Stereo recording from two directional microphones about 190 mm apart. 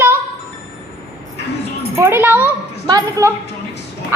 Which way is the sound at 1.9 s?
15° right (ahead or behind).